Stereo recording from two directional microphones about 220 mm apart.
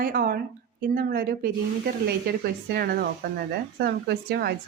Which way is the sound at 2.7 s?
45° right (ahead or behind).